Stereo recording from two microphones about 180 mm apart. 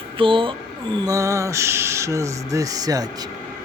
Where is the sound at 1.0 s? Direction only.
20° right (ahead or behind).